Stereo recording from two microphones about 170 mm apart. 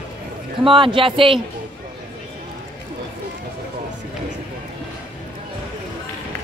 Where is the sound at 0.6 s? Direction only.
30° right (ahead or behind).